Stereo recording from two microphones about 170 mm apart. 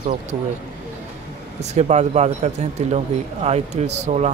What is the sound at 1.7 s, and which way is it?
Speech, 40° right (ahead or behind).